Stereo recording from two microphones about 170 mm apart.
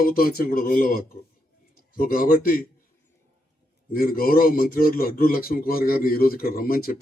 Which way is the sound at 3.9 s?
60° left (ahead or behind).